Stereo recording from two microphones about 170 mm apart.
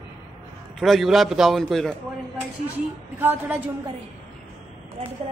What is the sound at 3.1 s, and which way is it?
Speech, 10° right (ahead or behind).